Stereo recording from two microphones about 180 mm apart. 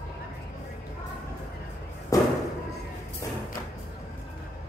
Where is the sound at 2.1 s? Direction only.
20° left (ahead or behind).